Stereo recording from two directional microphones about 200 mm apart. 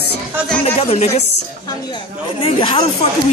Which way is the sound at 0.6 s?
30° left (ahead or behind).